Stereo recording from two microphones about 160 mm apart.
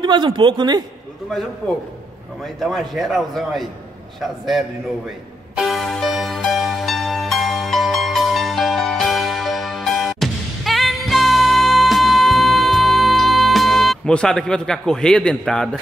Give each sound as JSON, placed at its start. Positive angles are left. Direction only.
{"t": 0.0, "sound": "speech", "side_deg": -30}
{"t": 2.4, "sound": "a man's voice", "side_deg": 0}
{"t": 5.6, "sound": "music", "side_deg": 0}